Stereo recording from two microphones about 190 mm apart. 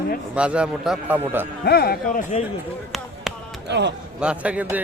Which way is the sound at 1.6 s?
55° left (ahead or behind).